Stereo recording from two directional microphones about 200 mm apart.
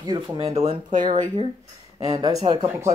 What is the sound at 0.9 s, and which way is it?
Speech, 40° right (ahead or behind).